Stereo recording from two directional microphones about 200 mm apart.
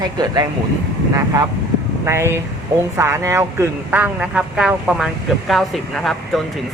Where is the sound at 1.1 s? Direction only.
15° right (ahead or behind).